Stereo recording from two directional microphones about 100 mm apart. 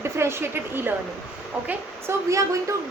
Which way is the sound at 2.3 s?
30° right (ahead or behind).